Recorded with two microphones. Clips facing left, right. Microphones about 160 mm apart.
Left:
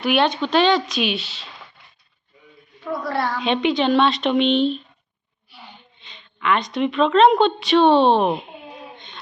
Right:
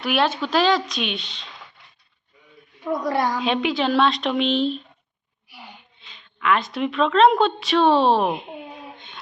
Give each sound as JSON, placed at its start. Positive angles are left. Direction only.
{"t": 0.0, "sound": "a woman's voice", "side_deg": 0}
{"t": 2.8, "sound": "a woman's voice", "side_deg": -15}
{"t": 3.4, "sound": "a woman's voice", "side_deg": 0}
{"t": 5.5, "sound": "gasp", "side_deg": -10}
{"t": 6.0, "sound": "a woman's voice", "side_deg": 0}